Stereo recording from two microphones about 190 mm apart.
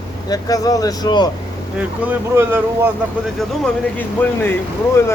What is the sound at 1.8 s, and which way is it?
Speech, 10° right (ahead or behind).